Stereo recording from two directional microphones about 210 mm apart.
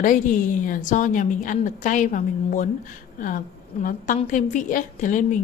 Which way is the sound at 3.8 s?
40° left (ahead or behind).